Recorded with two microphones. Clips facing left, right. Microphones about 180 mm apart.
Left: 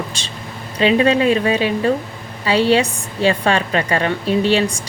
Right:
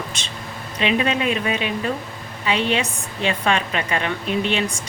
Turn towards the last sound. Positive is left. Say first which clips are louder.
# left 6 dB
turn(degrees=35)  # may be behind; listen again after turning